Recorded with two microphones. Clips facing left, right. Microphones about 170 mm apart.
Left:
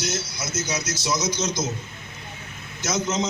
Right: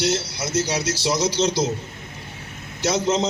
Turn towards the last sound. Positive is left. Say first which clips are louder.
# right 4 dB
turn(degrees=-35)  # may be behind; listen again after turning